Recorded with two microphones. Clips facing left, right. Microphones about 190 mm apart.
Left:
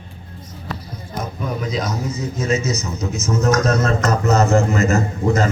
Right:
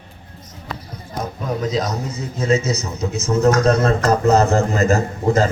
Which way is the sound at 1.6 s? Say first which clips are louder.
Right 2 dB; 40° right (ahead or behind).